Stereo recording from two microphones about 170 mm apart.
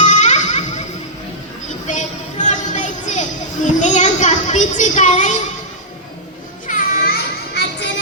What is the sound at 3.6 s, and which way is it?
Children playing, 45° left (ahead or behind).